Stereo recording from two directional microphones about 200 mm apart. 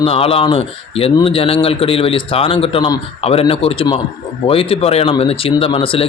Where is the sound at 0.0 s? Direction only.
30° left (ahead or behind).